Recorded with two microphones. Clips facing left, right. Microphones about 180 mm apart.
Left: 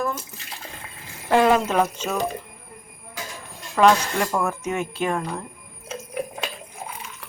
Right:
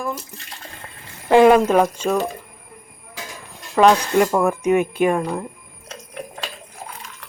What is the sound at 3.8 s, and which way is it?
Speech, 15° right (ahead or behind).